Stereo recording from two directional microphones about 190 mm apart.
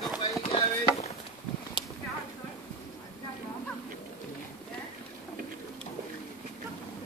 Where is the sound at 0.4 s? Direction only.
35° left (ahead or behind).